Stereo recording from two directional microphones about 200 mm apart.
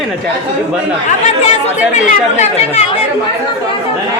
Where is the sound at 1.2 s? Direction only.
35° left (ahead or behind).